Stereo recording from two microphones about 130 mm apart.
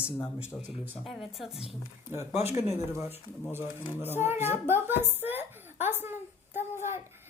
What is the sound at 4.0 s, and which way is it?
A woman's voice, 15° right (ahead or behind).